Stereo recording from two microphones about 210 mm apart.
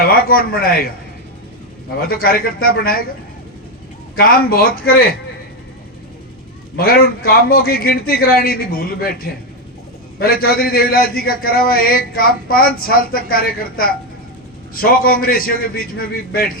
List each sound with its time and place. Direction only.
0.0 s speech: 45° left (ahead or behind)
2.0 s a man's voice: 45° left (ahead or behind)
4.1 s a man's voice: 45° left (ahead or behind)
6.7 s a man's voice: 45° left (ahead or behind)